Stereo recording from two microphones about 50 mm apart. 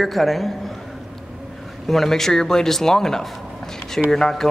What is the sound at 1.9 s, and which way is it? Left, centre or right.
A man's voice, centre.